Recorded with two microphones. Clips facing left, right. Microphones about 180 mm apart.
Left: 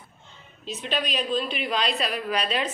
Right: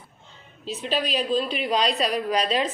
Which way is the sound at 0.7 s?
35° right (ahead or behind).